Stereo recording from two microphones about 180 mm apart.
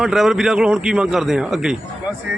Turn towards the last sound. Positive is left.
turn(degrees=-5)  # may be behind; listen again after turning